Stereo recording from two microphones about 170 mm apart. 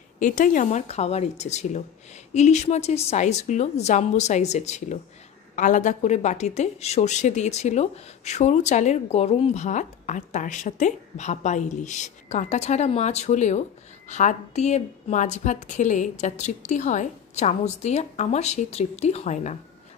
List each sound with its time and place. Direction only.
0.2 s a woman's voice: 50° left (ahead or behind)